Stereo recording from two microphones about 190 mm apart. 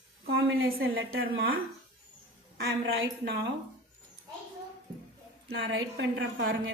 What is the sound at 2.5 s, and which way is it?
Speech, 60° right (ahead or behind).